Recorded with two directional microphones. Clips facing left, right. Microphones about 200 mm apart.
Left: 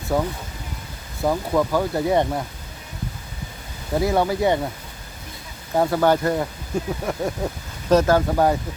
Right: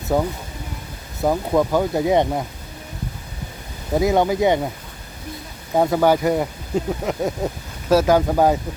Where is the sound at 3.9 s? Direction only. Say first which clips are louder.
Right 3 dB; 20° right (ahead or behind).